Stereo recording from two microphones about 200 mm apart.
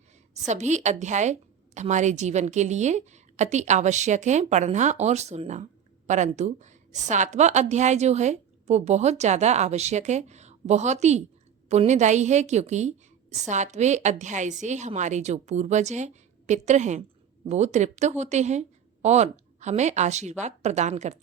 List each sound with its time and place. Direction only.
0.4 s a woman's voice: 35° right (ahead or behind)